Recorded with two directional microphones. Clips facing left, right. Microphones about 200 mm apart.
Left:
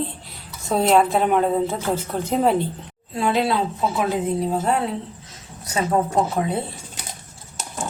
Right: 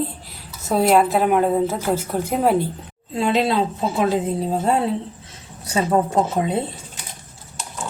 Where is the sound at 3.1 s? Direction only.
20° right (ahead or behind).